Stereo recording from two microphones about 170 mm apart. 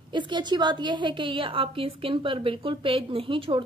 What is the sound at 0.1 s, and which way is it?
Speech, 25° right (ahead or behind).